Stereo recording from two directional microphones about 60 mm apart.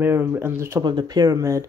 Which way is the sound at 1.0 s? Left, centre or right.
Right.